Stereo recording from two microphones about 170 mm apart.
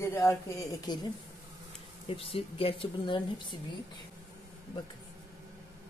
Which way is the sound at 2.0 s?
35° left (ahead or behind).